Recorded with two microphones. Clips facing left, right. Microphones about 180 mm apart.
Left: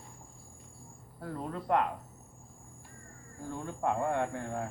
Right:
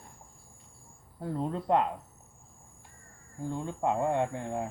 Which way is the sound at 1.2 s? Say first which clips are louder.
Right 5 dB; 25° right (ahead or behind).